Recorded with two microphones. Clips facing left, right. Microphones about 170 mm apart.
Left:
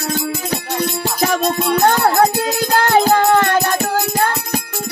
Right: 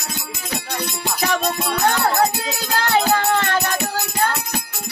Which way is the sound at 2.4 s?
45° left (ahead or behind).